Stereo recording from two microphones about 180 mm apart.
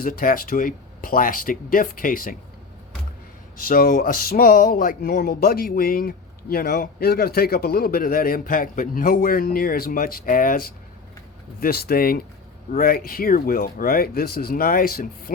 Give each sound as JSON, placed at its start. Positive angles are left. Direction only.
{"t": 0.0, "sound": "speech", "side_deg": 50}
{"t": 3.6, "sound": "speech", "side_deg": 50}